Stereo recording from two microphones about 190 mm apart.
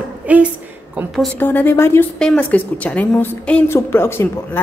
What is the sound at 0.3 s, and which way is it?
A woman's voice, 10° right (ahead or behind).